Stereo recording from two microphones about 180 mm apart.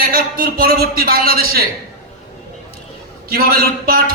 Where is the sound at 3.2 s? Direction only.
55° right (ahead or behind).